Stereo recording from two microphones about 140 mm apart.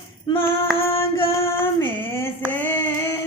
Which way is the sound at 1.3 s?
15° left (ahead or behind).